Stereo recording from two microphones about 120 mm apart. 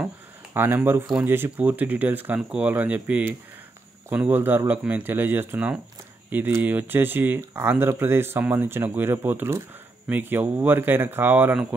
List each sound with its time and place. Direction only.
0.6 s speech: 20° right (ahead or behind)